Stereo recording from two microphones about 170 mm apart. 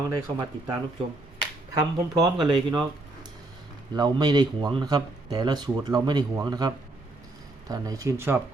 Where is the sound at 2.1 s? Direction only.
25° right (ahead or behind).